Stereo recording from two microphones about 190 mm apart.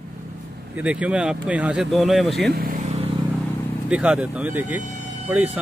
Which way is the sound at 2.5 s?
45° right (ahead or behind).